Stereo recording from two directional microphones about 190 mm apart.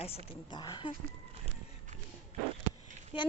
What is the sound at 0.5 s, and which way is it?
Child singing, 20° left (ahead or behind).